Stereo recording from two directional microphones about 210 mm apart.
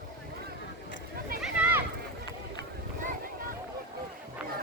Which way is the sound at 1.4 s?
5° right (ahead or behind).